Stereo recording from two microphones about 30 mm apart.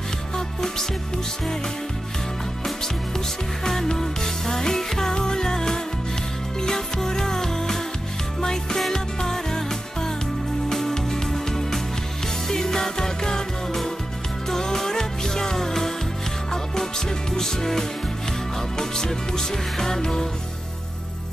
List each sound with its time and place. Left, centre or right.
3.6 s music: centre
14.8 s music: centre
17.4 s music: centre